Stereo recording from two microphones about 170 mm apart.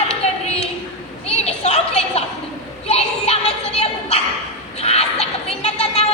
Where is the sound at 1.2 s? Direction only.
40° left (ahead or behind).